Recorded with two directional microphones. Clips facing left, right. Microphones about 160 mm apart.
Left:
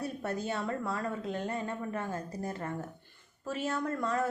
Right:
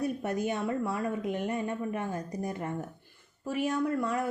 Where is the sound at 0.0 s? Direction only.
15° right (ahead or behind).